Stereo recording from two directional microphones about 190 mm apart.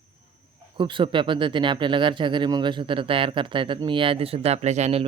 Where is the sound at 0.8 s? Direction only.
25° right (ahead or behind).